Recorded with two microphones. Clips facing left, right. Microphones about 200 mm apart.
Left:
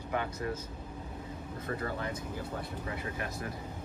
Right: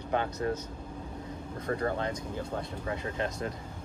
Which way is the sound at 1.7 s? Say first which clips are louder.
Right 5 dB; 40° right (ahead or behind).